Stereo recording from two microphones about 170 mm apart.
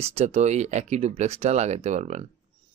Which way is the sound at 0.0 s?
40° right (ahead or behind).